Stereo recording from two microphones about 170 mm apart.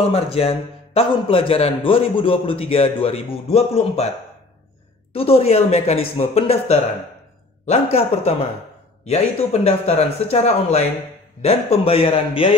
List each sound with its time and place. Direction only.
0.1 s a man's voice: 35° left (ahead or behind)
5.1 s a man's voice: 35° left (ahead or behind)